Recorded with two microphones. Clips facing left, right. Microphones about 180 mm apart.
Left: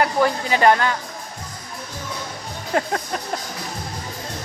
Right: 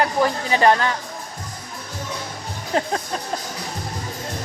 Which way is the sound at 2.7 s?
25° right (ahead or behind).